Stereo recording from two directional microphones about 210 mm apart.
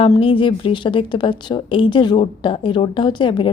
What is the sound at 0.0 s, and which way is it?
A woman's voice, 25° left (ahead or behind).